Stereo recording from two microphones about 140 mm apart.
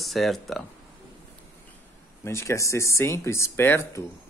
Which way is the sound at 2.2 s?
20° left (ahead or behind).